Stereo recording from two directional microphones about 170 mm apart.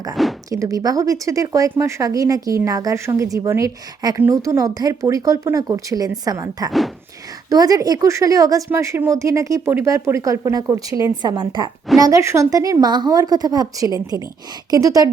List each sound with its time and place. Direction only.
0.2 s a sound: centre (ahead or behind)
0.5 s a woman's voice: 20° right (ahead or behind)
6.7 s speech: centre (ahead or behind)
7.5 s a woman's voice: 20° right (ahead or behind)